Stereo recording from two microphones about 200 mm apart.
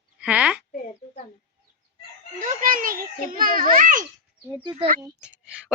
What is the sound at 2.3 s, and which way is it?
A child's voice, 40° right (ahead or behind).